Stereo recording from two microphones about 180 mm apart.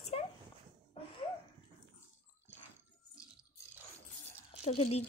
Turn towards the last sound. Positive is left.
turn(degrees=35)  # may be behind; listen again after turning